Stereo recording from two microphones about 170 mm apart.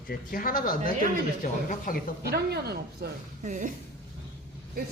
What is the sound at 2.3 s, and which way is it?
Speech, 70° right (ahead or behind).